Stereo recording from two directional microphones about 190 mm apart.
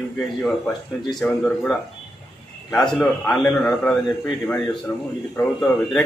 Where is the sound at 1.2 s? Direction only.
5° left (ahead or behind).